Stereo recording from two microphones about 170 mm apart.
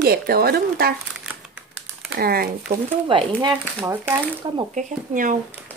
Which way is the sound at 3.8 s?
15° right (ahead or behind).